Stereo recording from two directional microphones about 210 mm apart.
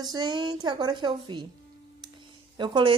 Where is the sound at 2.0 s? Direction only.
20° right (ahead or behind).